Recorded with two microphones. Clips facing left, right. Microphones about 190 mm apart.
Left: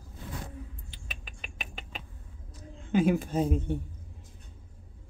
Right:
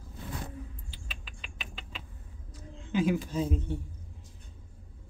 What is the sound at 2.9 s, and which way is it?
Speech, 55° left (ahead or behind).